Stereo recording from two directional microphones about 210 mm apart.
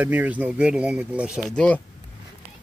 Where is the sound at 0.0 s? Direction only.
5° right (ahead or behind).